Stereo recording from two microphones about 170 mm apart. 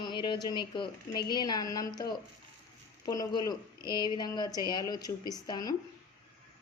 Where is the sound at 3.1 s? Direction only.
20° left (ahead or behind).